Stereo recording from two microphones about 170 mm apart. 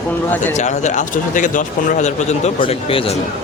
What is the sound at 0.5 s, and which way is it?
A man's voice, 45° left (ahead or behind).